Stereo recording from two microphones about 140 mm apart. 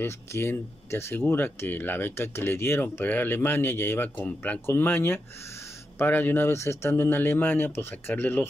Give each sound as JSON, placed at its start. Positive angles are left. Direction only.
{"t": 0.0, "sound": "speech", "side_deg": 20}